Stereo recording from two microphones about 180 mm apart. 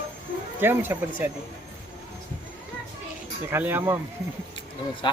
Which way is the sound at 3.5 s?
10° right (ahead or behind).